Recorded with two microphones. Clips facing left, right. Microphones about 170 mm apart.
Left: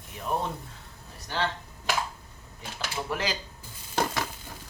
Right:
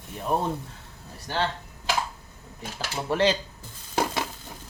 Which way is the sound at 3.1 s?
30° right (ahead or behind).